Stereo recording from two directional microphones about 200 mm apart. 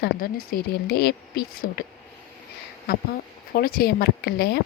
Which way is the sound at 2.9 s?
50° left (ahead or behind).